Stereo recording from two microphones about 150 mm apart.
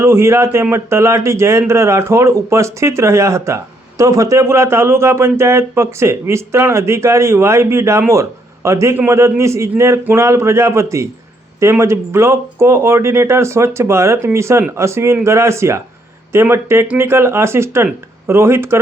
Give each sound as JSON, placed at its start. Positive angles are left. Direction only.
{"t": 0.0, "sound": "speech", "side_deg": -20}